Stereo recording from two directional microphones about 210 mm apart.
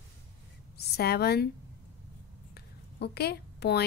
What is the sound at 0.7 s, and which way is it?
Speech, 50° left (ahead or behind).